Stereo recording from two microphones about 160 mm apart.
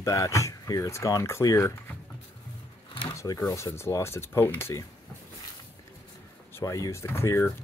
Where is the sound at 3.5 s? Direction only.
15° left (ahead or behind).